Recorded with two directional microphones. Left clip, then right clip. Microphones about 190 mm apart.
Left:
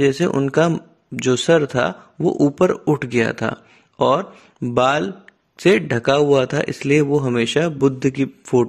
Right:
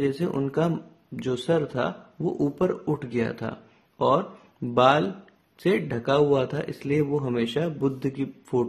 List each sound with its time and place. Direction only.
0.0 s speech: 30° left (ahead or behind)